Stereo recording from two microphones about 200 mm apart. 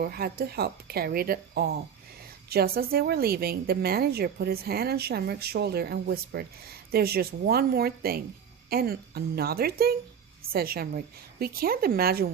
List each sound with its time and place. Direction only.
0.0 s a woman's voice: 50° right (ahead or behind)